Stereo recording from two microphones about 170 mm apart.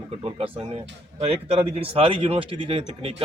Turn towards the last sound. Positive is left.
turn(degrees=-30)  # may be behind; listen again after turning